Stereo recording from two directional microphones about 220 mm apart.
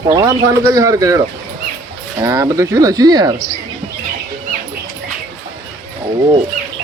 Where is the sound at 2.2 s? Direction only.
15° right (ahead or behind).